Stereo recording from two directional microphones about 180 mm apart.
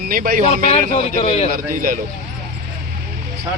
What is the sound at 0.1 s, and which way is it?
Speech, 50° right (ahead or behind).